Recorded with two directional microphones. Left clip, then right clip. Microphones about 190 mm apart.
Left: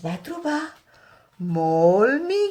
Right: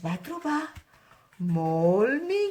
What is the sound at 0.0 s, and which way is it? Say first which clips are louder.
Speech: left 4 dB; 35° right (ahead or behind).